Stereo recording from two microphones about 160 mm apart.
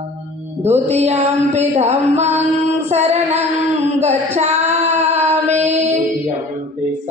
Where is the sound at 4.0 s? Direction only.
45° right (ahead or behind).